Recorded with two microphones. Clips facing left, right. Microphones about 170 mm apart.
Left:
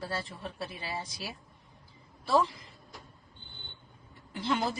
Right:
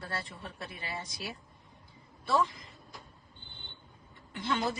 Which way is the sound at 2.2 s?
30° left (ahead or behind).